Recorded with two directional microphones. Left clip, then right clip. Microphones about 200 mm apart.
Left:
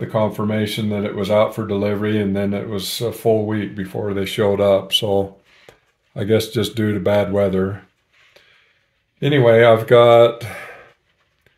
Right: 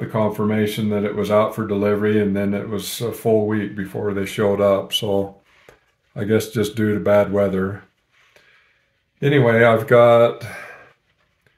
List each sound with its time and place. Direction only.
0.1 s speech: 25° left (ahead or behind)
9.2 s speech: 30° left (ahead or behind); by 10.7 s 45° left (ahead or behind)